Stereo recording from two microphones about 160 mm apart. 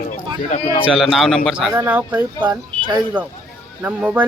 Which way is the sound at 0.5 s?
45° left (ahead or behind).